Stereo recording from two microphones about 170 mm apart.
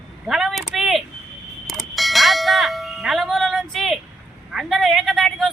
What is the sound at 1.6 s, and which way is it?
Music, centre (ahead or behind).